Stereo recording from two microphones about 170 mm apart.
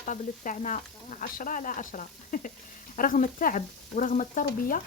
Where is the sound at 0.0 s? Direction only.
50° left (ahead or behind).